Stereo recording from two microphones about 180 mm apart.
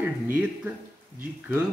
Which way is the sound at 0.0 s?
10° right (ahead or behind).